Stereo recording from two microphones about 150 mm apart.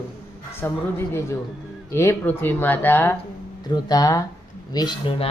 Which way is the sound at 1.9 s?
15° left (ahead or behind).